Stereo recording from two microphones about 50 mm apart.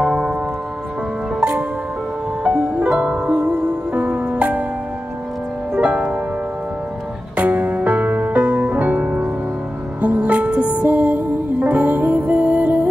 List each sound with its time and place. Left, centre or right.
0.0 s music: centre
1.4 s music: centre
2.8 s music: right
5.8 s music: right
7.3 s music: right